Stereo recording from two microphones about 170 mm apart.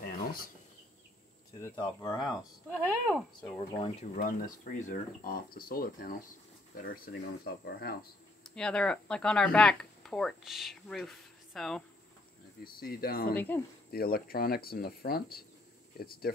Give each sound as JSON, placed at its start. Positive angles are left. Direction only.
{"t": 0.0, "sound": "insect", "side_deg": 60}
{"t": 1.6, "sound": "speech", "side_deg": 20}
{"t": 2.2, "sound": "speech", "side_deg": 0}
{"t": 4.1, "sound": "speech", "side_deg": 55}
{"t": 8.5, "sound": "speech", "side_deg": 5}
{"t": 12.6, "sound": "speech", "side_deg": 60}
{"t": 13.3, "sound": "speech", "side_deg": 10}
{"t": 13.8, "sound": "speech", "side_deg": 60}